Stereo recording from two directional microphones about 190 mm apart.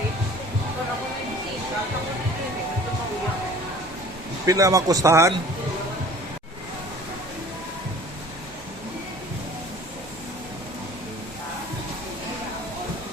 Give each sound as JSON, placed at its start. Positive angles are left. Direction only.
{"t": 4.4, "sound": "a man's voice", "side_deg": -15}